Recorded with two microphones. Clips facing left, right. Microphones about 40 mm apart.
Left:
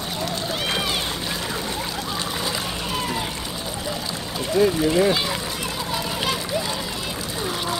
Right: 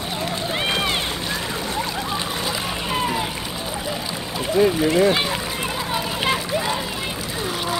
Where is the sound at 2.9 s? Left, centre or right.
Centre.